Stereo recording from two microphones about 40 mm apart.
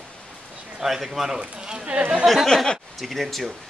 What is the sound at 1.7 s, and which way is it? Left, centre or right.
Speech, right.